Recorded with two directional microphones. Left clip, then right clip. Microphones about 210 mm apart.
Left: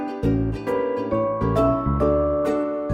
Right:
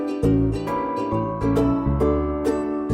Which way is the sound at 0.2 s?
5° right (ahead or behind).